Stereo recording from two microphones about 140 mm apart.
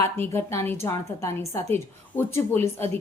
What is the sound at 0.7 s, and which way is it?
A woman's voice, 20° left (ahead or behind).